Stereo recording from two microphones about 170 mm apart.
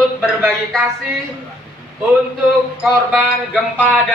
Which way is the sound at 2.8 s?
5° left (ahead or behind).